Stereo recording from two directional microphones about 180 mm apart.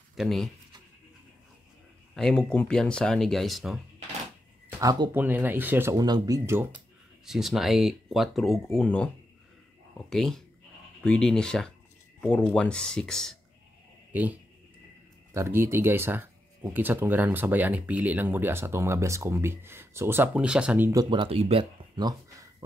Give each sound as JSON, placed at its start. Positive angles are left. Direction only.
{"t": 0.1, "sound": "speech", "side_deg": 0}
{"t": 2.1, "sound": "speech", "side_deg": 5}
{"t": 4.7, "sound": "speech", "side_deg": -20}
{"t": 5.1, "sound": "speech", "side_deg": -10}
{"t": 7.2, "sound": "speech", "side_deg": 0}
{"t": 14.1, "sound": "speech", "side_deg": -10}